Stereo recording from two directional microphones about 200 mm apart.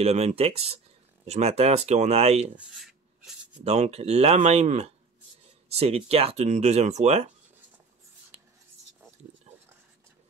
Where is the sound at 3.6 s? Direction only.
30° right (ahead or behind).